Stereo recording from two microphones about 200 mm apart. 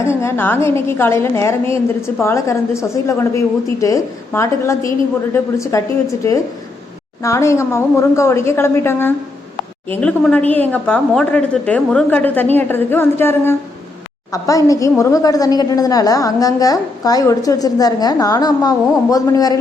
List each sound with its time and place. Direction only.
0.0 s a woman's voice: 15° left (ahead or behind)